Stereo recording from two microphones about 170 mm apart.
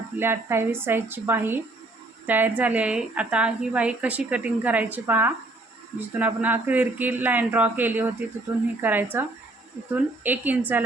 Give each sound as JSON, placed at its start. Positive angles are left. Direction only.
{"t": 0.2, "sound": "a woman's voice", "side_deg": -15}